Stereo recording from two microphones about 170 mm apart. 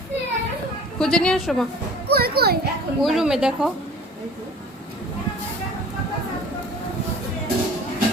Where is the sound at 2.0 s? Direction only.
65° right (ahead or behind).